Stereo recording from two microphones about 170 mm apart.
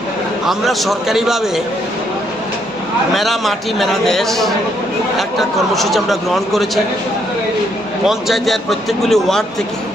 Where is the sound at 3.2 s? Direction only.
Centre (ahead or behind).